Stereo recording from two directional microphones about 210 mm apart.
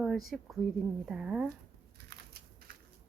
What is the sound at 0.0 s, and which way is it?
A woman's voice, centre (ahead or behind).